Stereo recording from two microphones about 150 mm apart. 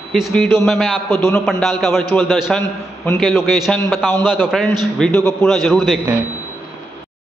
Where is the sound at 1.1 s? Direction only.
15° left (ahead or behind).